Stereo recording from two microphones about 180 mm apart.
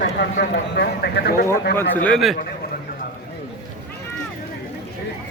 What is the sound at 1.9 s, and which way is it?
Speech, 5° left (ahead or behind).